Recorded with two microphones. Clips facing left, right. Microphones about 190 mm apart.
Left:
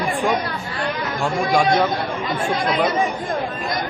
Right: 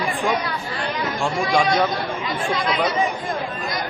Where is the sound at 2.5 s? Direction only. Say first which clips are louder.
Left 3 dB; 50° left (ahead or behind).